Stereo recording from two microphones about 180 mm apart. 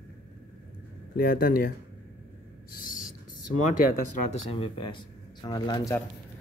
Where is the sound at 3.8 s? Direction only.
45° left (ahead or behind).